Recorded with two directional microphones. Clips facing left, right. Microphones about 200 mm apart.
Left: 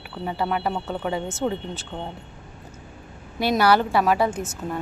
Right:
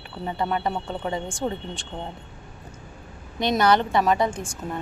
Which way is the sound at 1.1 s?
5° left (ahead or behind).